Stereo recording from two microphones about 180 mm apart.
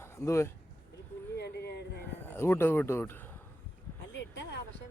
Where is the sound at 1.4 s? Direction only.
65° left (ahead or behind).